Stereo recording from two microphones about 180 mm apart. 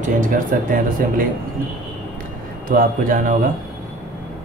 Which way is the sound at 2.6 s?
50° right (ahead or behind).